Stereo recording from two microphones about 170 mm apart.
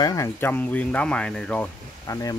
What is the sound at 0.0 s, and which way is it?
Speech, 20° left (ahead or behind).